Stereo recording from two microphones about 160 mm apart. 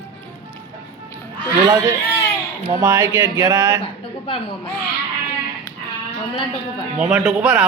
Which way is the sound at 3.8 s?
35° left (ahead or behind).